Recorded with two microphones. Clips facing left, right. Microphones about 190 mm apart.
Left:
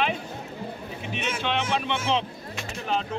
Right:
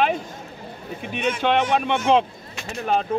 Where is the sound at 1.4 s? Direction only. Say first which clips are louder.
Right 7 dB; 50° right (ahead or behind).